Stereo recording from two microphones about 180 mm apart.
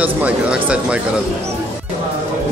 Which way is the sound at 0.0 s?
10° right (ahead or behind).